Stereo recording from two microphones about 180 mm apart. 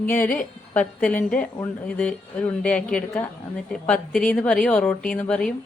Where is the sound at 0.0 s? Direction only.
10° left (ahead or behind).